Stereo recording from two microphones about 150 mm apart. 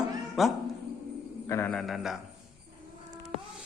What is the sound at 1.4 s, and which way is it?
Speech, 15° left (ahead or behind).